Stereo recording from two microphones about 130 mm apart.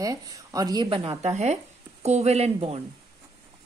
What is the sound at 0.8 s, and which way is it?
Speech, 45° right (ahead or behind).